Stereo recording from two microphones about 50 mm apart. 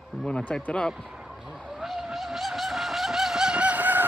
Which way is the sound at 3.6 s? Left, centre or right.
Right.